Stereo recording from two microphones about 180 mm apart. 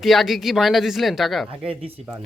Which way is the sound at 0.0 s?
Centre (ahead or behind).